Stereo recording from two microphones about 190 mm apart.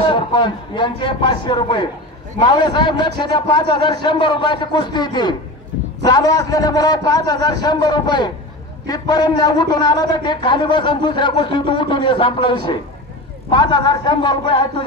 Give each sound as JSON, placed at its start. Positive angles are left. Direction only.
{"t": 0.0, "sound": "a man's voice", "side_deg": 25}